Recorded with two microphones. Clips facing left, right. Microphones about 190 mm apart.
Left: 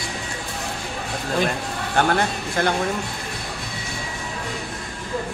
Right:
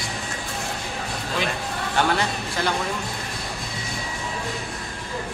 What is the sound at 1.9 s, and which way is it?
Speech, 50° left (ahead or behind).